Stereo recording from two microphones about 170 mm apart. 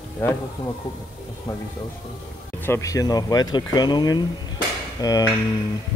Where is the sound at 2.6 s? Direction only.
15° left (ahead or behind).